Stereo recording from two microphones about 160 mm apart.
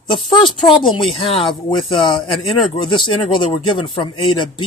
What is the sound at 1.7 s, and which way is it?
Speech, 35° left (ahead or behind).